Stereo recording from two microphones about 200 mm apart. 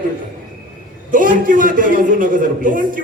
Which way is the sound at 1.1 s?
40° right (ahead or behind).